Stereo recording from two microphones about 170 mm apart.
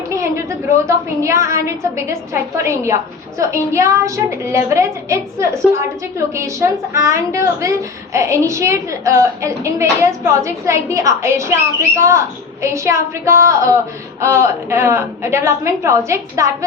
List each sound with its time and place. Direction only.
0.9 s a woman's voice: 15° right (ahead or behind)
12.6 s a woman's voice: 15° right (ahead or behind)